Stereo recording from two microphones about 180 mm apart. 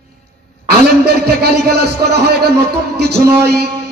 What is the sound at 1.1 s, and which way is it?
A man's voice, 65° right (ahead or behind).